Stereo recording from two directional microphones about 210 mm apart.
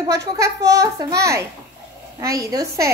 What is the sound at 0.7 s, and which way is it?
Speech, 15° right (ahead or behind).